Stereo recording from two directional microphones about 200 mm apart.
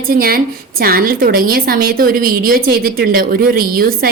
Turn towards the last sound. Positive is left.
turn(degrees=-45)  # may be behind; listen again after turning